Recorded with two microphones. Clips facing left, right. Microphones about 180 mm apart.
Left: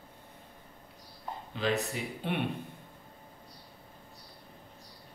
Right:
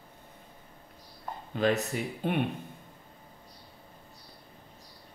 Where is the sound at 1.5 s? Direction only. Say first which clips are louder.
Right 4 dB; 50° right (ahead or behind).